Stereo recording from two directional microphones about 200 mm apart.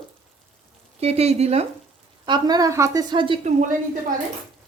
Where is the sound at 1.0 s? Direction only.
30° right (ahead or behind).